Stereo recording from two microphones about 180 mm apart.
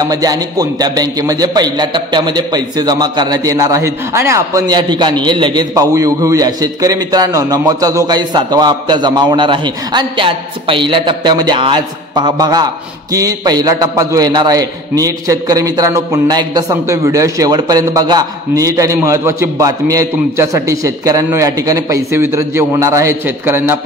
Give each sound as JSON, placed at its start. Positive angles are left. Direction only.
{"t": 0.0, "sound": "a man's voice", "side_deg": -20}